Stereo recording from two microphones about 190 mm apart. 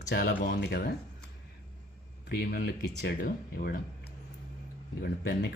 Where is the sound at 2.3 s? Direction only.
55° left (ahead or behind).